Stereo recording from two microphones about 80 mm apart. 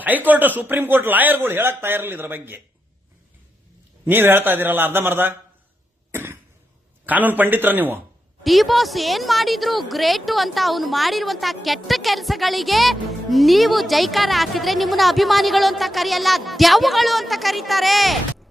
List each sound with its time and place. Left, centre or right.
0.3 s a man's voice: right
4.0 s a man's voice: right
7.0 s a man's voice: right
8.4 s a woman's voice: centre